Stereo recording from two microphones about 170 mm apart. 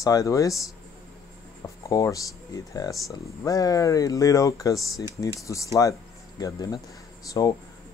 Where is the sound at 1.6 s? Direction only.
20° left (ahead or behind).